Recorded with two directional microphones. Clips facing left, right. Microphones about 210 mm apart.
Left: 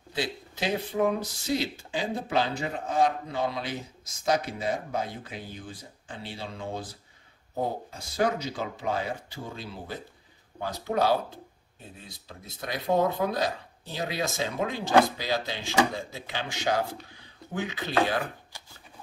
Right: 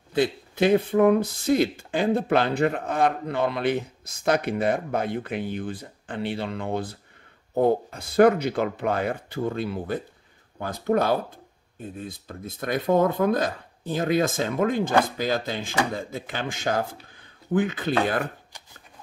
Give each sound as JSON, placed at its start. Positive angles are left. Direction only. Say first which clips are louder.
{"t": 0.1, "sound": "speech", "louder": "right 9 dB", "side_deg": -55}